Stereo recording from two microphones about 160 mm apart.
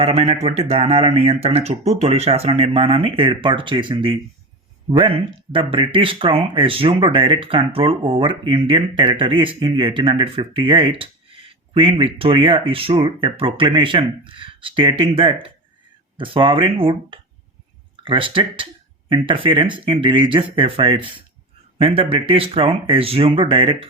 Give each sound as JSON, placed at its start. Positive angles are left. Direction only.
{"t": 0.0, "sound": "speech", "side_deg": -40}